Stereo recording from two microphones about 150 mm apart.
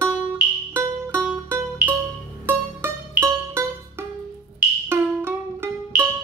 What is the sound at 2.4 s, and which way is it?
Music, 15° right (ahead or behind).